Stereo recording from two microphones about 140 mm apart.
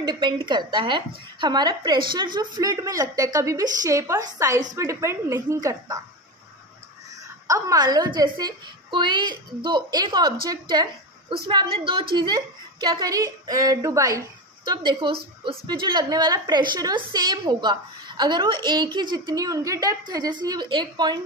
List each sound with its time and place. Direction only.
0.0 s a woman's voice: 30° right (ahead or behind)
7.4 s a woman's voice: 25° right (ahead or behind)